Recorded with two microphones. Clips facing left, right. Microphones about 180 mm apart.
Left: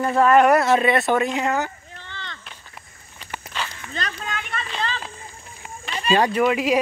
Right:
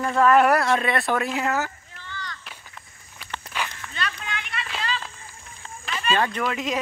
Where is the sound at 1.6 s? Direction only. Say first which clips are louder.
Left 2 dB; 20° left (ahead or behind).